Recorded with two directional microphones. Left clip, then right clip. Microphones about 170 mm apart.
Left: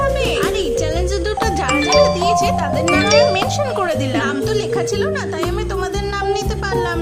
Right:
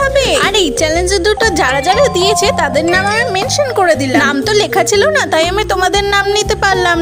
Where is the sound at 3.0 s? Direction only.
25° right (ahead or behind).